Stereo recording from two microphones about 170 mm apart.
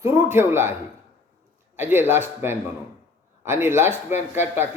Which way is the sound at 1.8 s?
10° right (ahead or behind).